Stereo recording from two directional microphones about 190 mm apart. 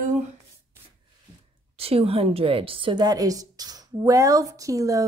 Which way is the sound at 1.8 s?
30° right (ahead or behind).